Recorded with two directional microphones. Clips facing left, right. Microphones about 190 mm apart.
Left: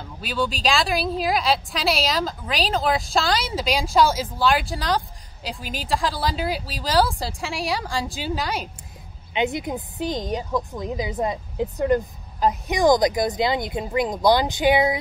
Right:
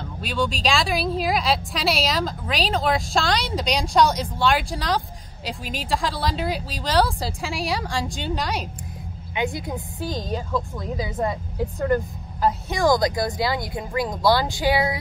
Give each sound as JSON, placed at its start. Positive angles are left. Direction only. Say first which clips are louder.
{"t": 0.2, "sound": "a woman's voice", "louder": "even", "side_deg": 0}
{"t": 9.3, "sound": "a woman's voice", "louder": "left 2 dB", "side_deg": 20}